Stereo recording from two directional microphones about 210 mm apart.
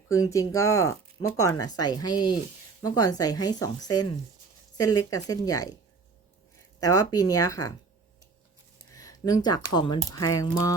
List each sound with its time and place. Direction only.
0.1 s speech: 15° left (ahead or behind)
6.7 s speech: 15° left (ahead or behind)
8.9 s a sound: 15° left (ahead or behind)
9.7 s speech: 20° left (ahead or behind)